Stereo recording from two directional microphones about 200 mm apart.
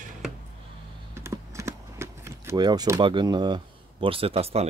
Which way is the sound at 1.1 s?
15° right (ahead or behind).